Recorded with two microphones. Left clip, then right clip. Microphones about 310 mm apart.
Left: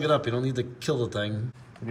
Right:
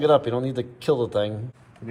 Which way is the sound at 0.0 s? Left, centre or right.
Centre.